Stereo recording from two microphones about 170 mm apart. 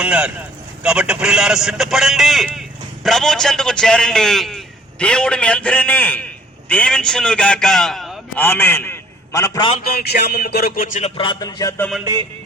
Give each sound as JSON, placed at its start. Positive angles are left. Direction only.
{"t": 0.0, "sound": "a man's voice", "side_deg": -5}
{"t": 8.4, "sound": "a man's voice", "side_deg": 10}
{"t": 9.8, "sound": "speech", "side_deg": 70}
{"t": 11.2, "sound": "speech", "side_deg": 25}